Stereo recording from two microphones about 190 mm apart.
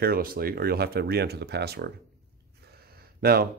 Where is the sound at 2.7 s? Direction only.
55° right (ahead or behind).